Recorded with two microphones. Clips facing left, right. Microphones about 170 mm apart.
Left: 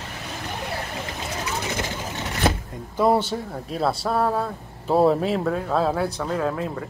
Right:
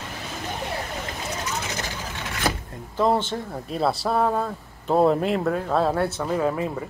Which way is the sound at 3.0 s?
10° left (ahead or behind).